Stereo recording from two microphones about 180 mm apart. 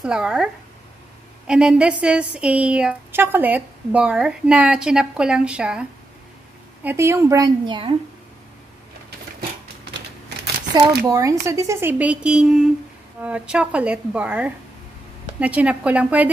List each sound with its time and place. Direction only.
0.0 s speech: 5° right (ahead or behind)
1.5 s speech: 5° right (ahead or behind); by 7.9 s 25° right (ahead or behind)
11.1 s speech: 15° right (ahead or behind)